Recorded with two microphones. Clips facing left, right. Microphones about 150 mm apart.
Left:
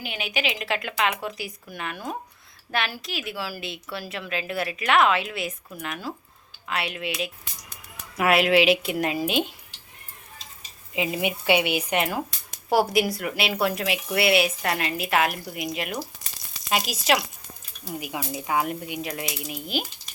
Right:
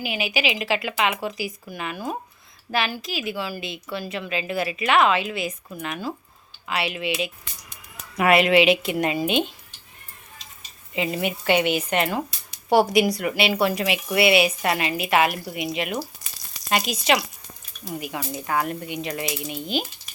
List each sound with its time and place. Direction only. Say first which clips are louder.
0.0 s a woman's voice: right 4 dB; 5° right (ahead or behind)
10.9 s a woman's voice: right 1 dB; 5° left (ahead or behind)